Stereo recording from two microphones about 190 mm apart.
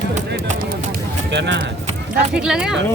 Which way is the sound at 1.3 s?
70° right (ahead or behind).